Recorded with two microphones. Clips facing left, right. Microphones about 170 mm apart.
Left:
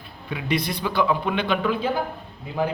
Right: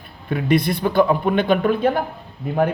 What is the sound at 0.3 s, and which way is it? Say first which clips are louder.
A man's voice: right 7 dB; 50° right (ahead or behind).